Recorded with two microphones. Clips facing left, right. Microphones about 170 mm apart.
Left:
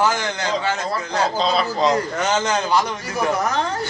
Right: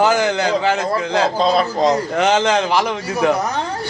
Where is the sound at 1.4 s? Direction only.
50° right (ahead or behind).